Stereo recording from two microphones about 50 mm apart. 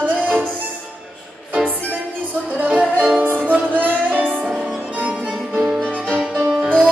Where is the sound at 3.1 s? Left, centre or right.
Right.